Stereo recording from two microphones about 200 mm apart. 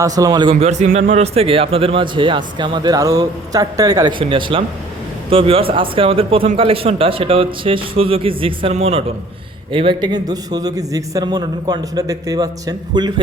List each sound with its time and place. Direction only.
0.0 s a man's voice: 15° right (ahead or behind)